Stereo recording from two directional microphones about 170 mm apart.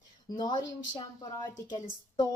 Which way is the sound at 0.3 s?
25° left (ahead or behind).